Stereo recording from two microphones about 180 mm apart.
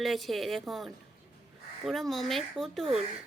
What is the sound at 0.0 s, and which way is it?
Speech, centre (ahead or behind).